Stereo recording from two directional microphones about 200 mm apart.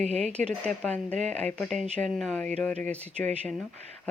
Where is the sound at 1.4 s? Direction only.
5° left (ahead or behind).